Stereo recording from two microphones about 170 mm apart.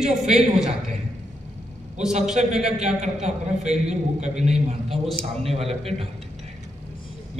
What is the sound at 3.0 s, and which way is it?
A man's voice, 45° right (ahead or behind).